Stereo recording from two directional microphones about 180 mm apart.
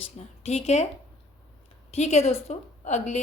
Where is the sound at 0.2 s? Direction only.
35° left (ahead or behind).